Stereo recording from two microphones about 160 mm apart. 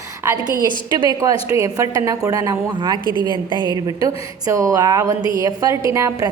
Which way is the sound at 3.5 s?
25° right (ahead or behind).